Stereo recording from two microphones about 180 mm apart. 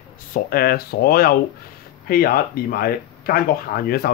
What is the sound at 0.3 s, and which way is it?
Speech, 55° left (ahead or behind).